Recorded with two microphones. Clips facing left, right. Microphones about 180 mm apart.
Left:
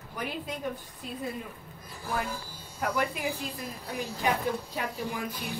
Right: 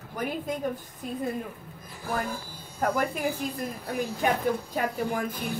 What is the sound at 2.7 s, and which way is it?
A woman's voice, 45° right (ahead or behind).